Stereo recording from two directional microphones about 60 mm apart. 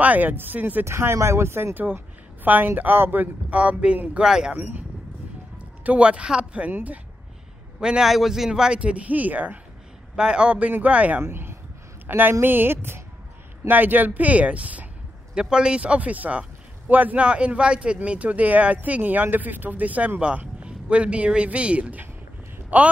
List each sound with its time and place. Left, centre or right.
0.0 s a man's voice: right
0.8 s a woman's voice: right
4.2 s a man's voice: centre
4.6 s a woman's voice: right
5.9 s a man's voice: right
7.8 s a man's voice: centre
10.1 s a man's voice: centre
11.2 s a woman's voice: right